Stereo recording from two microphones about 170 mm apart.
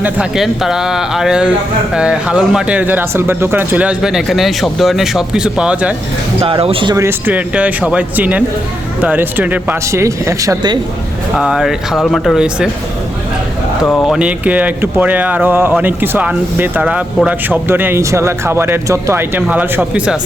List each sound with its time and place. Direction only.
0.0 s speech: 5° right (ahead or behind)
6.4 s speech: 35° right (ahead or behind)
6.9 s speech: 15° right (ahead or behind)
11.3 s speech: 5° right (ahead or behind)
14.0 s speech: 5° right (ahead or behind)